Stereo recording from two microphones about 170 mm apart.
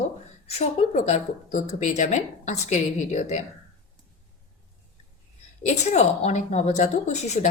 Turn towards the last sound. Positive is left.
turn(degrees=45)  # may be behind; listen again after turning